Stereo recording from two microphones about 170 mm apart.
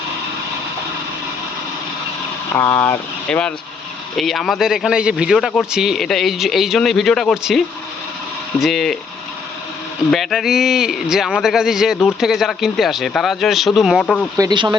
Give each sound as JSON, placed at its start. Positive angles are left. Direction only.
{"t": 2.6, "sound": "speech", "side_deg": 10}
{"t": 8.6, "sound": "speech", "side_deg": 0}
{"t": 10.1, "sound": "speech", "side_deg": 0}
{"t": 14.3, "sound": "speech", "side_deg": -25}